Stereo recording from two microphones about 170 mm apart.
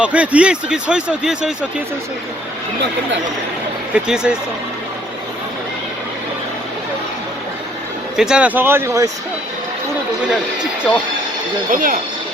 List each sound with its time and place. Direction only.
0.0 s speech: 5° right (ahead or behind)
3.9 s speech: 5° right (ahead or behind)
8.1 s speech: 5° right (ahead or behind)
11.7 s speech: 55° right (ahead or behind)